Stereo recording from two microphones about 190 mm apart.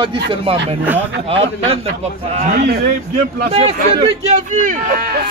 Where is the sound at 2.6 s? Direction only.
55° right (ahead or behind).